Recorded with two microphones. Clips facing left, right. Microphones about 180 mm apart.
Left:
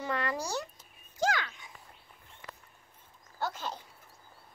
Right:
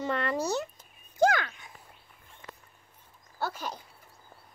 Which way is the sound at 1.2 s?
55° right (ahead or behind).